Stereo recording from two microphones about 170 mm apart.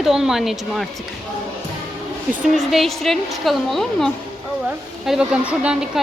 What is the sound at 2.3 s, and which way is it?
A woman's voice, centre (ahead or behind).